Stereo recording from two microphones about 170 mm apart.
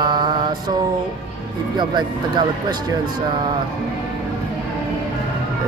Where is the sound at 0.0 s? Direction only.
25° right (ahead or behind).